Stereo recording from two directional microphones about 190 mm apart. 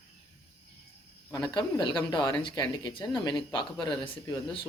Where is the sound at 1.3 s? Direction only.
25° left (ahead or behind).